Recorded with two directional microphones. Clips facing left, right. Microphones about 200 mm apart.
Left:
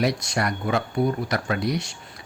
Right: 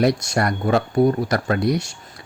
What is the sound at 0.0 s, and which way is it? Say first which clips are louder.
Speech: right 5 dB; 50° right (ahead or behind).